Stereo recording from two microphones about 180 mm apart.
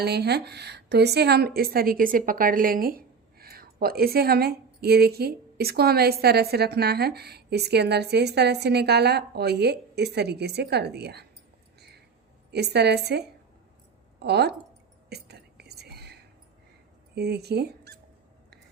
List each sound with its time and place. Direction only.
0.0 s a woman's voice: 65° right (ahead or behind)
12.5 s a woman's voice: 65° right (ahead or behind)
15.1 s whispering: 65° right (ahead or behind)
17.2 s speech: 65° right (ahead or behind)